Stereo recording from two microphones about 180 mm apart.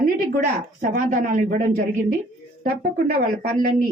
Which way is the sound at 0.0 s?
50° right (ahead or behind).